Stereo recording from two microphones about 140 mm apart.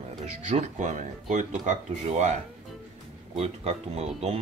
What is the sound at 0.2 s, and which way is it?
Speech, 55° right (ahead or behind).